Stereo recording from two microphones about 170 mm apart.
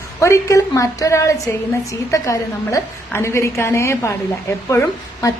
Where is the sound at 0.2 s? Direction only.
20° left (ahead or behind).